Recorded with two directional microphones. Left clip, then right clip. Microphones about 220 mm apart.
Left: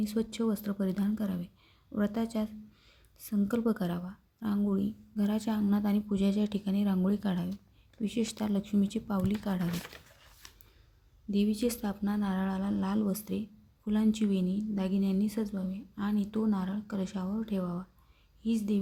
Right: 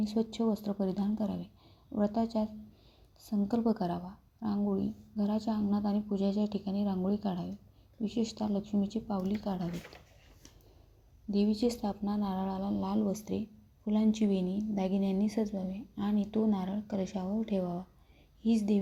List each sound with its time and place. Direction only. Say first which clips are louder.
0.0 s a woman's voice: even; 10° left (ahead or behind)
11.3 s a woman's voice: even; 10° left (ahead or behind)